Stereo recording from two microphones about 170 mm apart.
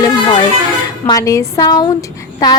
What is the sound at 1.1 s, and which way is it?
Speech, 20° left (ahead or behind).